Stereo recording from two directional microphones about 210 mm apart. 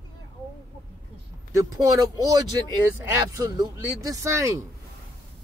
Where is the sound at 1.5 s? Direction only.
15° right (ahead or behind).